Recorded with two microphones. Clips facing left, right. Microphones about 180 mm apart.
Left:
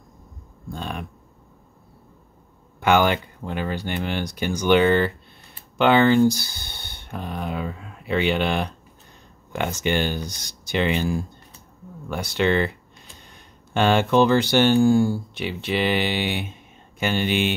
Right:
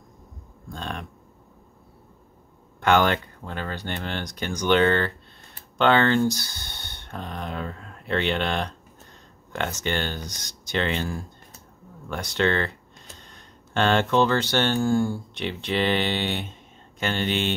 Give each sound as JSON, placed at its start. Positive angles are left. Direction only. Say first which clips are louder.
{"t": 0.7, "sound": "speech", "louder": "left 2 dB", "side_deg": 5}
{"t": 2.8, "sound": "speech", "louder": "left 2 dB", "side_deg": 10}